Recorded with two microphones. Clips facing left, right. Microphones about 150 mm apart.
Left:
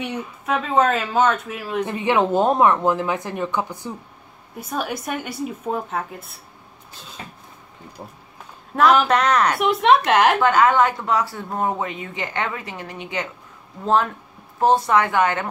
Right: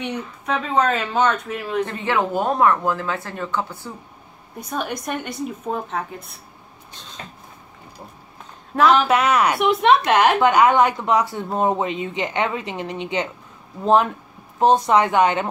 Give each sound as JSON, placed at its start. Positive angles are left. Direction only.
{"t": 0.0, "sound": "speech", "side_deg": 5}
{"t": 1.9, "sound": "speech", "side_deg": 15}
{"t": 4.6, "sound": "speech", "side_deg": 5}
{"t": 6.9, "sound": "cupboard open or close", "side_deg": 5}
{"t": 8.7, "sound": "speech", "side_deg": 0}
{"t": 10.4, "sound": "speech", "side_deg": -15}
{"t": 14.6, "sound": "speech", "side_deg": -20}